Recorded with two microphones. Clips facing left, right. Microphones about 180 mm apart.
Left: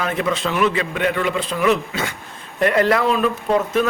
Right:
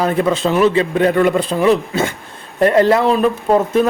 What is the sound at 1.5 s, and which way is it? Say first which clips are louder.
A man's voice: right 5 dB; 30° right (ahead or behind).